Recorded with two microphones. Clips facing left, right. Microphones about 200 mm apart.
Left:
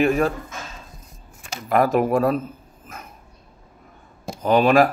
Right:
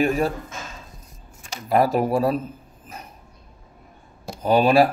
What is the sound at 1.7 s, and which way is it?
Speech, 35° right (ahead or behind).